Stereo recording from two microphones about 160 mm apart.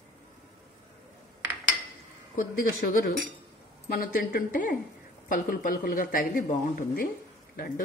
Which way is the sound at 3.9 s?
60° left (ahead or behind).